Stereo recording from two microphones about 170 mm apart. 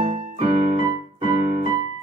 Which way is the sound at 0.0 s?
35° right (ahead or behind).